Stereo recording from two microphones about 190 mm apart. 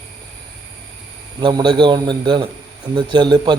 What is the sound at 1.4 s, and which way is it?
A man's voice, 25° right (ahead or behind).